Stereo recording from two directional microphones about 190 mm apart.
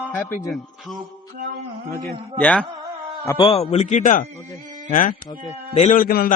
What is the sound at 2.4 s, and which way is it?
Speech, 5° left (ahead or behind).